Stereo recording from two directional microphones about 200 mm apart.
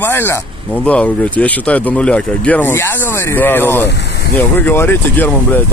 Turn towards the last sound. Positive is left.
turn(degrees=10)  # may be behind; listen again after turning